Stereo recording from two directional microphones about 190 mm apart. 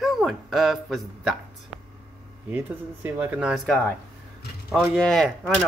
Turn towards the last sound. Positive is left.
turn(degrees=0)  # may be behind; listen again after turning